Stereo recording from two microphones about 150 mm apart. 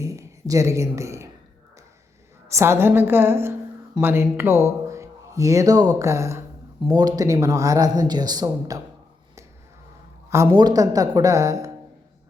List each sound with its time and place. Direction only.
0.0 s speech: 20° right (ahead or behind)
2.5 s a woman's voice: 15° right (ahead or behind)
10.2 s speech: 20° right (ahead or behind)